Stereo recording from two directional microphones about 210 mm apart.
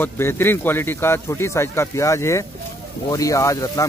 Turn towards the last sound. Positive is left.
turn(degrees=15)  # may be behind; listen again after turning